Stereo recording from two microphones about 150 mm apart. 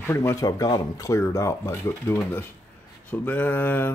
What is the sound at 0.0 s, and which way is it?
Speech, 15° left (ahead or behind).